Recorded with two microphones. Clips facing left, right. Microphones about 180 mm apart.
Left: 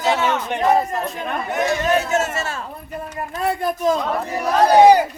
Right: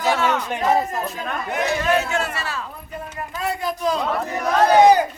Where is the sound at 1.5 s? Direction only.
40° left (ahead or behind).